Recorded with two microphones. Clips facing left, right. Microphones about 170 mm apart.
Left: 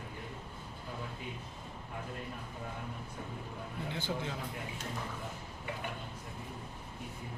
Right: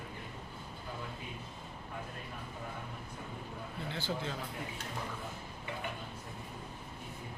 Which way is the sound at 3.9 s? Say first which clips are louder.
Even; 15° left (ahead or behind).